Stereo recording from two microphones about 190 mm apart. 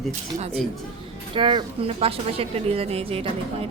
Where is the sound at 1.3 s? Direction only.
25° right (ahead or behind).